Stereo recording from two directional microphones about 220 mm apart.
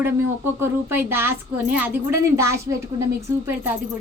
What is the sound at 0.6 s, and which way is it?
Speech, 10° right (ahead or behind).